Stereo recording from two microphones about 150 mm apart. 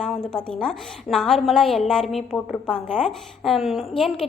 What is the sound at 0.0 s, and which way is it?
A woman's voice, 5° left (ahead or behind).